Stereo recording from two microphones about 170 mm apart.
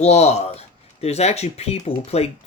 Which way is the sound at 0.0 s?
40° left (ahead or behind).